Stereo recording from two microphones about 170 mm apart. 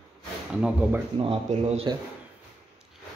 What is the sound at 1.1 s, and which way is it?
Speech, 30° right (ahead or behind).